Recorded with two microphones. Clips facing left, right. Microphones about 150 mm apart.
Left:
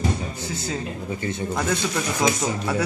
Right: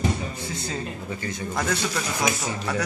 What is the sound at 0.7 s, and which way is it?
Speech, 20° left (ahead or behind).